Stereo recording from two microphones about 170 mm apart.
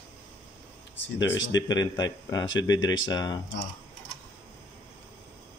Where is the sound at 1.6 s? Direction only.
25° left (ahead or behind).